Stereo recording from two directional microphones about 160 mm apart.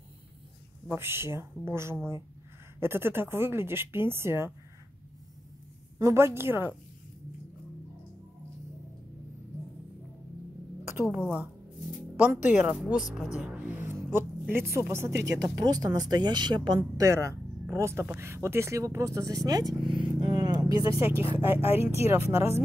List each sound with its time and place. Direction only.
0.8 s speech: 15° right (ahead or behind)
5.9 s speech: 20° right (ahead or behind)
10.9 s music: 15° right (ahead or behind)
12.2 s a woman's voice: 10° right (ahead or behind)
21.0 s speech: 15° right (ahead or behind)